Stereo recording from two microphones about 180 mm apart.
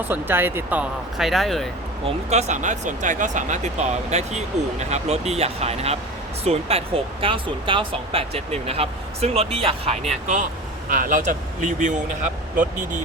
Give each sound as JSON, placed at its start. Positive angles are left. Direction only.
{"t": 0.1, "sound": "speech", "side_deg": -10}
{"t": 2.0, "sound": "speech", "side_deg": -40}